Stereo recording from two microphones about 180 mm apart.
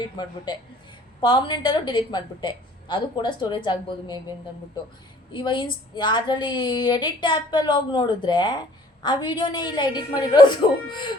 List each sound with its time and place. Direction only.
0.5 s speech: 25° left (ahead or behind)
5.3 s speech: 25° left (ahead or behind)